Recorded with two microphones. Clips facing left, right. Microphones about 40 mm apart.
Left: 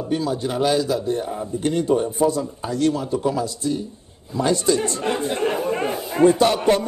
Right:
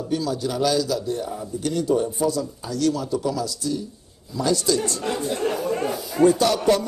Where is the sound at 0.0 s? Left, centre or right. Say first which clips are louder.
Left 2 dB; left.